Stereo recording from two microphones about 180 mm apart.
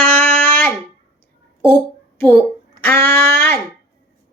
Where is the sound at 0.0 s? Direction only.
10° left (ahead or behind).